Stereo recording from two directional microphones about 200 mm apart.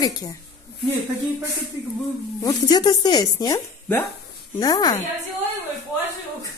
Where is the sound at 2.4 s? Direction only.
20° left (ahead or behind).